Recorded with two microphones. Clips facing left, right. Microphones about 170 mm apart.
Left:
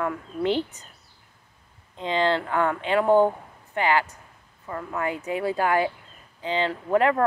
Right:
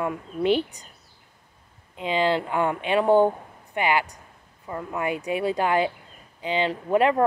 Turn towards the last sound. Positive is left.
turn(degrees=-20)  # may be behind; listen again after turning